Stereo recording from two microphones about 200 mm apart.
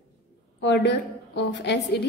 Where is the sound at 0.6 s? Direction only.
60° left (ahead or behind).